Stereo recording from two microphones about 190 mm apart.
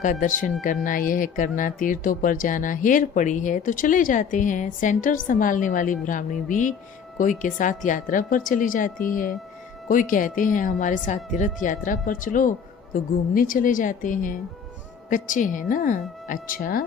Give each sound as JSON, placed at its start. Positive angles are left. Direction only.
{"t": 0.0, "sound": "speech", "side_deg": 45}